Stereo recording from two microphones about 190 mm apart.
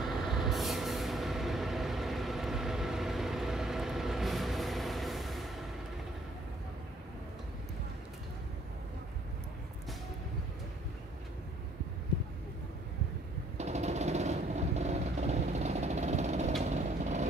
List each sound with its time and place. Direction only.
0.0 s vehicle: centre (ahead or behind)
13.6 s vehicle: 35° right (ahead or behind)